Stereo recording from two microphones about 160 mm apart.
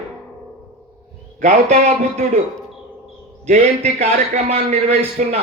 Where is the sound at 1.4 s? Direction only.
45° right (ahead or behind).